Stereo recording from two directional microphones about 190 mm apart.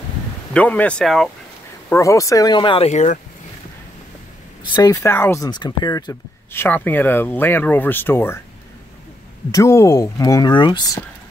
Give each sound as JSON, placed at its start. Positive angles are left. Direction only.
{"t": 0.5, "sound": "speech", "side_deg": 5}
{"t": 1.9, "sound": "speech", "side_deg": 15}
{"t": 4.7, "sound": "speech", "side_deg": 15}
{"t": 9.5, "sound": "speech", "side_deg": 15}